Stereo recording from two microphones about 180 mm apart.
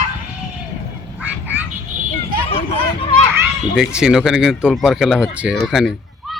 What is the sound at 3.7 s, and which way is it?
Speech, centre (ahead or behind).